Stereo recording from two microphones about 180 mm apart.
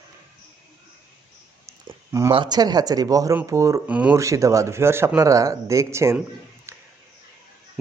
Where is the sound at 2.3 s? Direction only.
25° right (ahead or behind).